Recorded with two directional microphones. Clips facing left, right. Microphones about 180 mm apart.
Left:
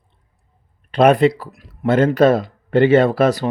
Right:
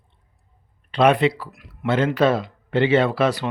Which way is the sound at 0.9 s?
45° left (ahead or behind).